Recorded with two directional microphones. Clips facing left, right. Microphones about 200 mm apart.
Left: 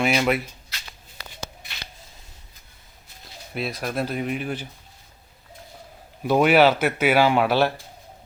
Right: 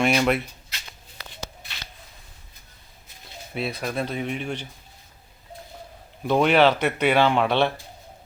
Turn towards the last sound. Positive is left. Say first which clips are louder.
# left 1 dB
turn(degrees=5)  # may be behind; listen again after turning